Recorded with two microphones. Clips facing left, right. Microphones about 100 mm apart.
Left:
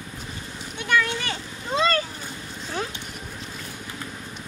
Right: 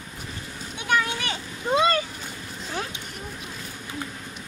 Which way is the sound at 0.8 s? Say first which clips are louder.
Left 1 dB; 15° right (ahead or behind).